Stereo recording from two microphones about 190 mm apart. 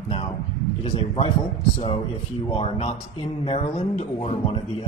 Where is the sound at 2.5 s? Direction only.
30° left (ahead or behind).